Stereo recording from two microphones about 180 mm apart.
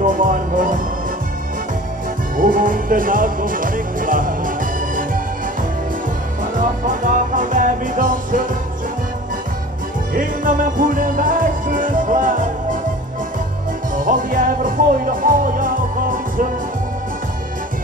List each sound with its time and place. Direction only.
0.0 s music: 50° right (ahead or behind)
2.3 s music: 50° right (ahead or behind)
6.4 s music: 50° right (ahead or behind)
10.1 s music: 50° right (ahead or behind)
13.9 s music: 50° right (ahead or behind)